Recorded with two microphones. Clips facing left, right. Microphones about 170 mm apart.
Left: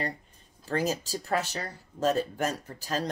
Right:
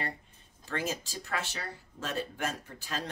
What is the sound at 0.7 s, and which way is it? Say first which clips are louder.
Speech: left 6 dB; 40° left (ahead or behind).